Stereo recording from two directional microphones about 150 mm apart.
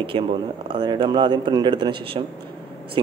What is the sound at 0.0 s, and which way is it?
Speech, 35° right (ahead or behind).